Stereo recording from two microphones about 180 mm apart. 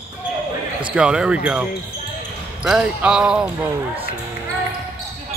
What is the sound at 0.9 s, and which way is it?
Speech, 5° right (ahead or behind).